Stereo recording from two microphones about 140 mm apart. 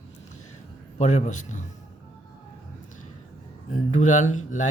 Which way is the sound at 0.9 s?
55° left (ahead or behind).